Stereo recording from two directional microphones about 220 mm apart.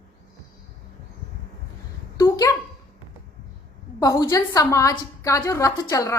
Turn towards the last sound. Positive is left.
turn(degrees=15)  # may be behind; listen again after turning